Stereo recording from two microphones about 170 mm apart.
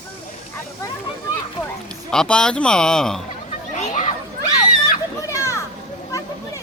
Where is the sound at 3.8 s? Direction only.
45° left (ahead or behind).